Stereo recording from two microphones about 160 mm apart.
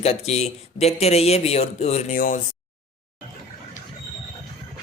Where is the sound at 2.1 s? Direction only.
60° left (ahead or behind).